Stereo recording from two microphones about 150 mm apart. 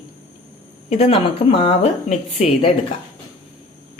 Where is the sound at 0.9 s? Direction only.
45° left (ahead or behind).